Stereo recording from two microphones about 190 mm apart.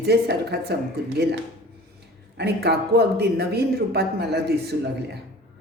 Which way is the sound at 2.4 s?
60° right (ahead or behind).